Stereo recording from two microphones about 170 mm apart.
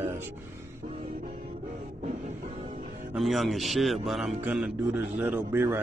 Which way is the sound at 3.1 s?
Centre (ahead or behind).